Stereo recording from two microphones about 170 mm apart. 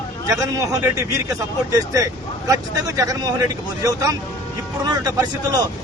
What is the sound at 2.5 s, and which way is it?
A man's voice, 20° right (ahead or behind).